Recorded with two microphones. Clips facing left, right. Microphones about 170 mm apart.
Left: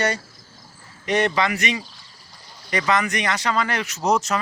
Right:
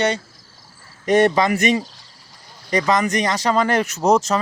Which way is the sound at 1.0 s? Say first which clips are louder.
Right 6 dB; 45° right (ahead or behind).